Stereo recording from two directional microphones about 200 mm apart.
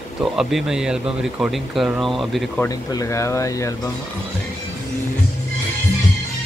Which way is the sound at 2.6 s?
15° left (ahead or behind).